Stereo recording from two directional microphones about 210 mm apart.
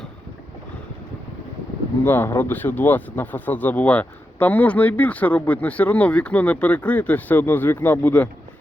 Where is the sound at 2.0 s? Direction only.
10° left (ahead or behind).